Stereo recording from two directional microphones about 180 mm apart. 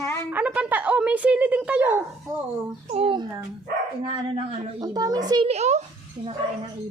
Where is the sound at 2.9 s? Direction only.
30° right (ahead or behind).